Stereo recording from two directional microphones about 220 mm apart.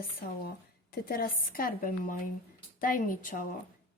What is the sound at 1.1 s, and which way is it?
A woman's voice, 40° left (ahead or behind).